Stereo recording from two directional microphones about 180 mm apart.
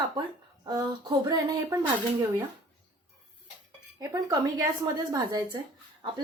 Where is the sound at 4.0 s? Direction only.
20° right (ahead or behind).